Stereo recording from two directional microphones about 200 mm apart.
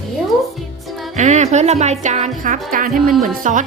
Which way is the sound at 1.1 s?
35° right (ahead or behind).